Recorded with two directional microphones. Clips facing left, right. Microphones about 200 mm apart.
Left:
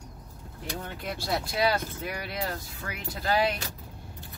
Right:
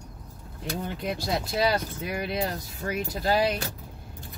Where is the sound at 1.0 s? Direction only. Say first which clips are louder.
Right 1 dB; 20° right (ahead or behind).